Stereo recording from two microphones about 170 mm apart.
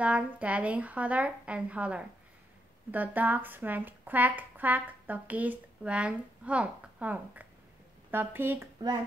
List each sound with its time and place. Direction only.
0.0 s speech: 10° right (ahead or behind)